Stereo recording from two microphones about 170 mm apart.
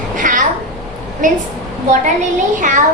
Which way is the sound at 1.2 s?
50° right (ahead or behind).